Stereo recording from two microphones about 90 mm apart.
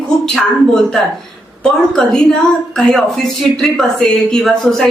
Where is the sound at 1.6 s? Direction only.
10° left (ahead or behind).